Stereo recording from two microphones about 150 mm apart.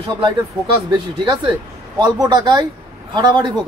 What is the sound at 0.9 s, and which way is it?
Speech, 30° right (ahead or behind).